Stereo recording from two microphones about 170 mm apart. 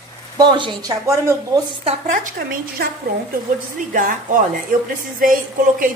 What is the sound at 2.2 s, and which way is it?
Speech, 60° right (ahead or behind).